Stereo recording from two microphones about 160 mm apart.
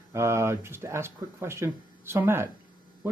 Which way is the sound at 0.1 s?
15° right (ahead or behind).